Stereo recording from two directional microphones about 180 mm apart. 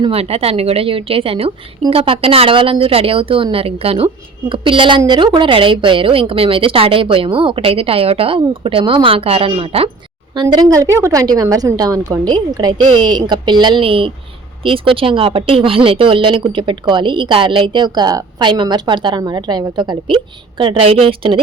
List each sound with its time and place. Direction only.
0.0 s a woman's voice: 35° right (ahead or behind)